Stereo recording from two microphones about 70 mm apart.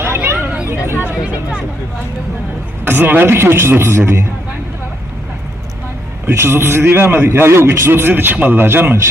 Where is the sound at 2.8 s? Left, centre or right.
Right.